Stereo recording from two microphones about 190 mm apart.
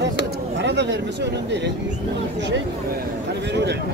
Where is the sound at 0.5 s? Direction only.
65° right (ahead or behind).